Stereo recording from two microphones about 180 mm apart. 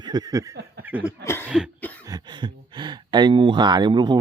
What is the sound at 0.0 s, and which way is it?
Snicker, 20° right (ahead or behind).